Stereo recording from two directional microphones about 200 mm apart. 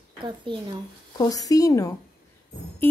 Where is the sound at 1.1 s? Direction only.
20° left (ahead or behind).